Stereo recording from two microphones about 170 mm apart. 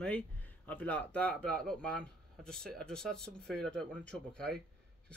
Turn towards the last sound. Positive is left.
turn(degrees=5)  # may be behind; listen again after turning